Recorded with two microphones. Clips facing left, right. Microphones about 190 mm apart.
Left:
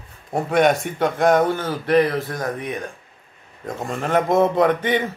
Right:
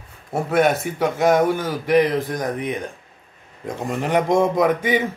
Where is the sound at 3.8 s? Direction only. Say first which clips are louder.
Right 1 dB; 15° right (ahead or behind).